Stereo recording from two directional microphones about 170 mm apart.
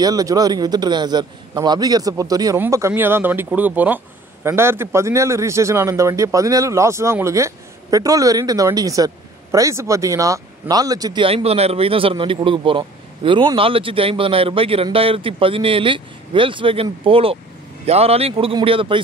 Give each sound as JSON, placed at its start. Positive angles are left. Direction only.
{"t": 0.0, "sound": "a man's voice", "side_deg": -20}
{"t": 11.2, "sound": "a man's voice", "side_deg": -35}